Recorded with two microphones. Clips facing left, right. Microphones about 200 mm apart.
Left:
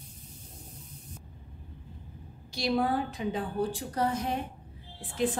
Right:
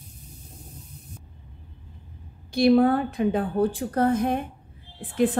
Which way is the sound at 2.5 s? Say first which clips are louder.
Right 10 dB; 55° right (ahead or behind).